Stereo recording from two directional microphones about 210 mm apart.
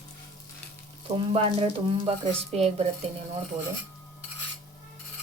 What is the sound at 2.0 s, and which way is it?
Speech, 30° right (ahead or behind).